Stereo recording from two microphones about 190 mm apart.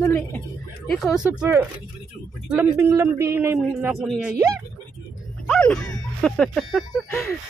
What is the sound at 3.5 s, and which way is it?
Speech, centre (ahead or behind).